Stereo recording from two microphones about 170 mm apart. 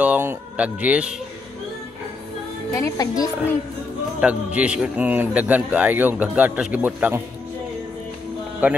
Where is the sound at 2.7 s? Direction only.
15° left (ahead or behind).